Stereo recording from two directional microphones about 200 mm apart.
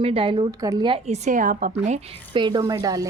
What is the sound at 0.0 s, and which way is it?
A woman's voice, 25° right (ahead or behind).